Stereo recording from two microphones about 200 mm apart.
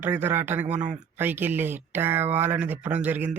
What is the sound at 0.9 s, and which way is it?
Speech, 10° right (ahead or behind).